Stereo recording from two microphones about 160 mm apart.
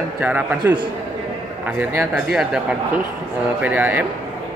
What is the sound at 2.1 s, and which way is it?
Speech, 5° right (ahead or behind).